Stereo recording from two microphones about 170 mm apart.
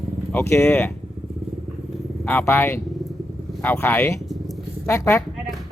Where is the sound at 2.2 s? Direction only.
15° left (ahead or behind).